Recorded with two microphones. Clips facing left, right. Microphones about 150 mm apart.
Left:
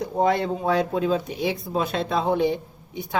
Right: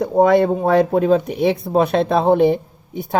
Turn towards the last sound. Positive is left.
turn(degrees=-50)  # may be behind; listen again after turning